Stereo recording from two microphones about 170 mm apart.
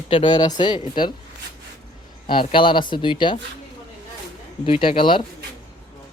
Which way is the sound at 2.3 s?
30° left (ahead or behind).